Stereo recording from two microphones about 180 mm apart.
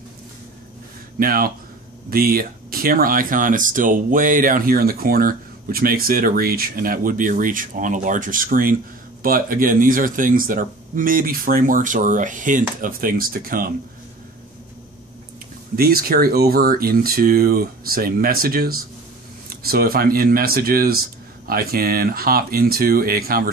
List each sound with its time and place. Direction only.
1.2 s speech: 55° right (ahead or behind)
15.7 s speech: 55° right (ahead or behind)